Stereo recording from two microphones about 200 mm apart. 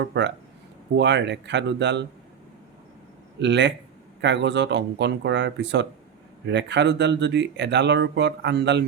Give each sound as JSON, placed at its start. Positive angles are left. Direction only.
{"t": 0.0, "sound": "speech", "side_deg": -60}
{"t": 3.4, "sound": "speech", "side_deg": -60}